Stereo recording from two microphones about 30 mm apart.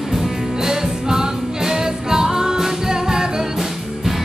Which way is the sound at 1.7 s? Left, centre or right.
Centre.